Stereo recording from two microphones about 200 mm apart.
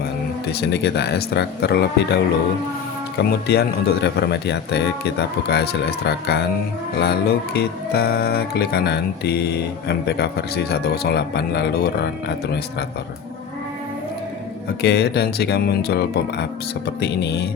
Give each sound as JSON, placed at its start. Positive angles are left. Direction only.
{"t": 0.5, "sound": "speech", "side_deg": 55}
{"t": 14.8, "sound": "speech", "side_deg": 55}